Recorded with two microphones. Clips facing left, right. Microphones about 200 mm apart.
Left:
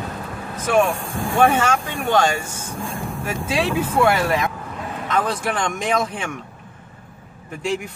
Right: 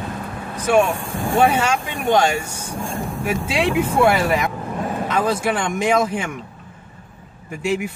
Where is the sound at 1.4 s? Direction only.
10° right (ahead or behind).